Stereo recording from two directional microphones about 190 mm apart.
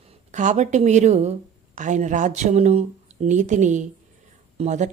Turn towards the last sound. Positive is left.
turn(degrees=-40)  # may be behind; listen again after turning